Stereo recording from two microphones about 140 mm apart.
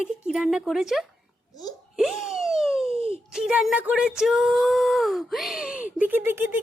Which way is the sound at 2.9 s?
45° right (ahead or behind).